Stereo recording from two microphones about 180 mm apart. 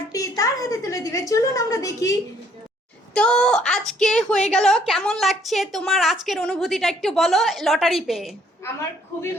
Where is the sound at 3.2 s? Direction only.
5° left (ahead or behind).